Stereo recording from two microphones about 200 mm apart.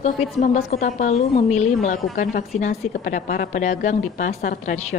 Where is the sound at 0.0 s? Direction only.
35° left (ahead or behind).